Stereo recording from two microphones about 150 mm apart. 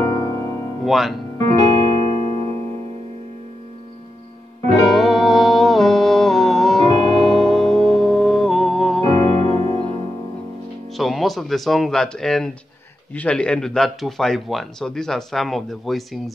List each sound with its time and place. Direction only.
0.0 s music: 25° left (ahead or behind)
0.8 s speech: centre (ahead or behind)
1.4 s music: 25° left (ahead or behind)
4.8 s music: centre (ahead or behind)
9.0 s music: 30° left (ahead or behind)
11.0 s speech: centre (ahead or behind)